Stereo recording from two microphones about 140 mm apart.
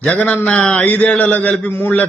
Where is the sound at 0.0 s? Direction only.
10° left (ahead or behind).